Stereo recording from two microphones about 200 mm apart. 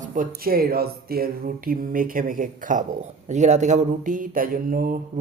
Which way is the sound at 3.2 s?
35° right (ahead or behind).